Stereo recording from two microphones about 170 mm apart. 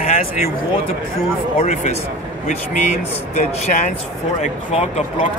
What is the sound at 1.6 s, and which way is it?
A man's voice, 45° left (ahead or behind).